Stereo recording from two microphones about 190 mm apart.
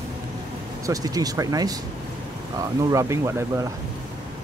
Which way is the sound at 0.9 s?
20° right (ahead or behind).